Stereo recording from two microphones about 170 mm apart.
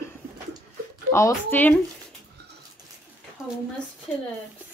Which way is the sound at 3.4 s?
5° right (ahead or behind).